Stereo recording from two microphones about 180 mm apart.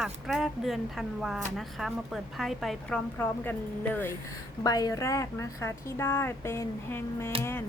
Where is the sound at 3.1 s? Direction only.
10° left (ahead or behind).